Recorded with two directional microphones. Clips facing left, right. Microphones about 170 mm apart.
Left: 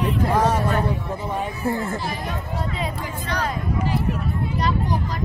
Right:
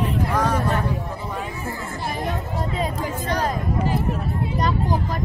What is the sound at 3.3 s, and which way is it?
Speech, 45° right (ahead or behind).